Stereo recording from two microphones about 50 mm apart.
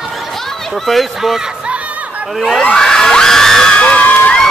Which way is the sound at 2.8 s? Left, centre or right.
Centre.